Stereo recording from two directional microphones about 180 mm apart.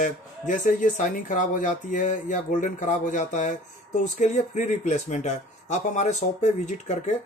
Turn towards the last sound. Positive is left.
turn(degrees=40)  # may be behind; listen again after turning